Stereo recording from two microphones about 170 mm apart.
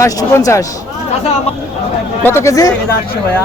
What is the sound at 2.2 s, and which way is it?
Speech, 15° left (ahead or behind).